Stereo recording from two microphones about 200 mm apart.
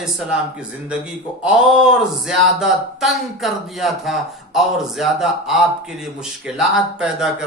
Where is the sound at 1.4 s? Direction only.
5° right (ahead or behind).